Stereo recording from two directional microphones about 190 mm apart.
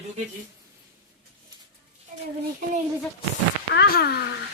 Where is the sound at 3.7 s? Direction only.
55° left (ahead or behind).